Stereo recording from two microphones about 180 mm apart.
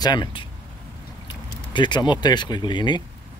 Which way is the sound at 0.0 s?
25° left (ahead or behind).